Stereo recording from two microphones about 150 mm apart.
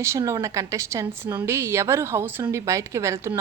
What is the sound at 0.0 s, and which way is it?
Speech, 20° right (ahead or behind).